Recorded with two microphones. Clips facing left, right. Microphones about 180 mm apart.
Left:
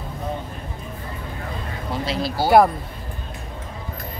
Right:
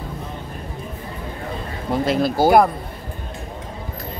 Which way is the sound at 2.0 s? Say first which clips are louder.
Right 6 dB; 50° right (ahead or behind).